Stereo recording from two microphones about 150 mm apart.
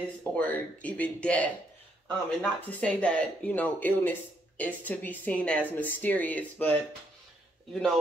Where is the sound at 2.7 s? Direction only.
10° left (ahead or behind).